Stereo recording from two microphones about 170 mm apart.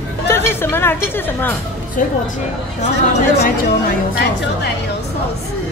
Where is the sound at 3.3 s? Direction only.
75° left (ahead or behind).